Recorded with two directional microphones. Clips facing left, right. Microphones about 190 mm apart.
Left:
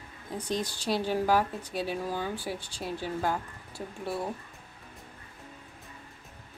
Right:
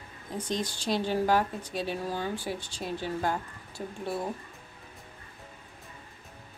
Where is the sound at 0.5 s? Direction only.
10° left (ahead or behind).